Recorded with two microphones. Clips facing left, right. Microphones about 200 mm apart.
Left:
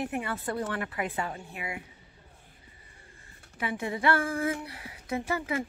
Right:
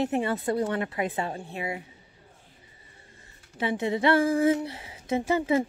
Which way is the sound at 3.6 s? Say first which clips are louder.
Right 5 dB; 25° right (ahead or behind).